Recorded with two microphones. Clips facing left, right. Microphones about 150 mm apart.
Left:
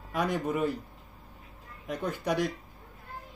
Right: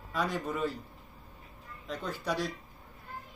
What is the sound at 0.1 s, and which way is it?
Speech, 15° left (ahead or behind).